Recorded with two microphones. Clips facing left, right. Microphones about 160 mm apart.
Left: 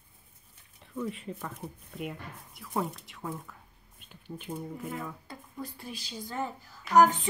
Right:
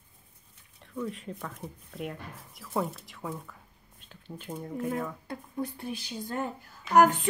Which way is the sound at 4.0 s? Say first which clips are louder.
Left 1 dB; 10° left (ahead or behind).